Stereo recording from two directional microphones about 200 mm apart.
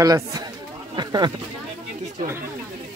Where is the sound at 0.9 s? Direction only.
20° right (ahead or behind).